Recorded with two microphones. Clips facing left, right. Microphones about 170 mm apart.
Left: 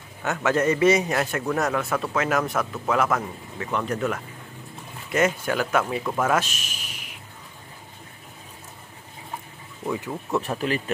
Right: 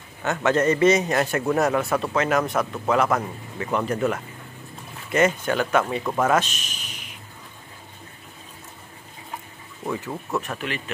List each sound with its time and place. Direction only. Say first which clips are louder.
0.2 s speech: right 2 dB; 5° left (ahead or behind)
10.3 s speech: left 4 dB; 30° left (ahead or behind)